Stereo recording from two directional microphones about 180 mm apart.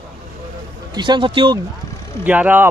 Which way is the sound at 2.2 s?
10° right (ahead or behind).